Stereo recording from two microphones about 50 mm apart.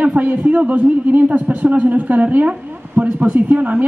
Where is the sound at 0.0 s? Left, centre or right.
Right.